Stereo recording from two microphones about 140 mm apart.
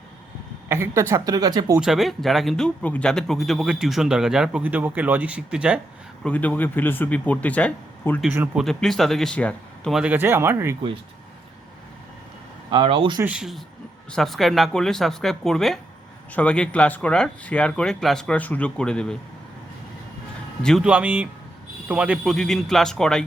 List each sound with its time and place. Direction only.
0.7 s speech: 20° right (ahead or behind)
1.8 s speech: centre (ahead or behind)
6.2 s speech: 10° left (ahead or behind)
9.9 s speech: 10° right (ahead or behind)
12.7 s speech: 40° right (ahead or behind)
13.2 s speech: 5° right (ahead or behind)
20.6 s speech: 5° left (ahead or behind)
20.8 s speech: 10° right (ahead or behind)